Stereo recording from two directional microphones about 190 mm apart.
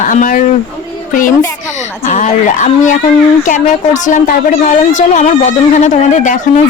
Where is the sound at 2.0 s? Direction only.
40° left (ahead or behind).